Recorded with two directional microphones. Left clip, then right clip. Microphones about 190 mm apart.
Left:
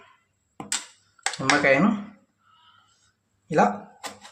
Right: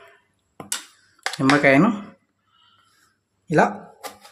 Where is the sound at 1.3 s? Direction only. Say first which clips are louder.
Right 4 dB; 35° right (ahead or behind).